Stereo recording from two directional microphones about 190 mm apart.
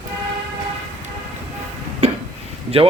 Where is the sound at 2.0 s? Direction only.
35° right (ahead or behind).